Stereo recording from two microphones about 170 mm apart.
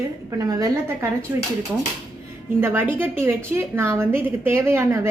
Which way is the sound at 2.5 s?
15° right (ahead or behind).